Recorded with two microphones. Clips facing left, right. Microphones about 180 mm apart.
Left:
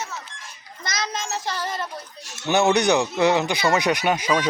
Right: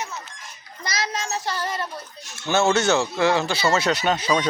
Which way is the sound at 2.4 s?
15° left (ahead or behind).